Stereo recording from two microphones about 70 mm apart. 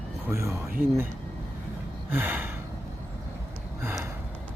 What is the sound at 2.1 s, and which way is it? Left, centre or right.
Gasp, right.